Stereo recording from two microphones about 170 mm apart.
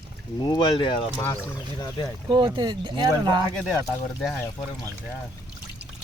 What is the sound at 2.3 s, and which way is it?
Speech, 25° right (ahead or behind).